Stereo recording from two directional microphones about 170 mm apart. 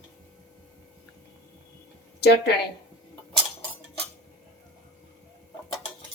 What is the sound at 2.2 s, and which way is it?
Speech, 75° left (ahead or behind).